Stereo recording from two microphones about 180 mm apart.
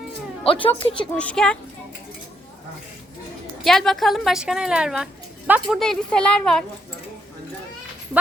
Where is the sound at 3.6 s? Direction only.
Centre (ahead or behind).